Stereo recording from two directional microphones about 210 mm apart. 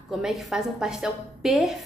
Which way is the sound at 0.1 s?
Centre (ahead or behind).